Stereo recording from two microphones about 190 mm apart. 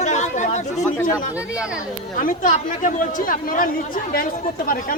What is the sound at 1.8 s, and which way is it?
Speech, 45° left (ahead or behind).